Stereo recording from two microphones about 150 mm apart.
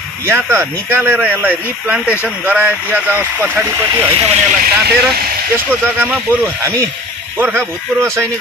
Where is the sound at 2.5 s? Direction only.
10° right (ahead or behind).